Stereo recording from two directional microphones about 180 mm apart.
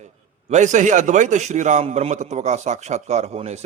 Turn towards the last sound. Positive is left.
turn(degrees=-35)  # may be behind; listen again after turning